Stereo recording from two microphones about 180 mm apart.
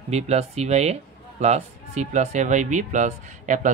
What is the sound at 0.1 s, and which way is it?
Speech, 35° right (ahead or behind).